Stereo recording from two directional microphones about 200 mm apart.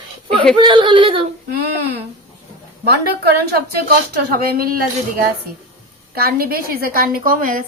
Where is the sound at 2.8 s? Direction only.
55° right (ahead or behind).